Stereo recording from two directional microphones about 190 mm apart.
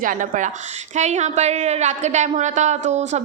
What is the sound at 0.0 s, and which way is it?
A woman's voice, 45° right (ahead or behind).